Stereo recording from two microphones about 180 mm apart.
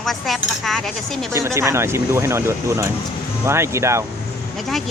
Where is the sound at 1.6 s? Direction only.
15° right (ahead or behind).